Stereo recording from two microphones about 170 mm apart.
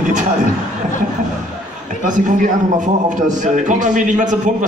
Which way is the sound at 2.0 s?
50° right (ahead or behind).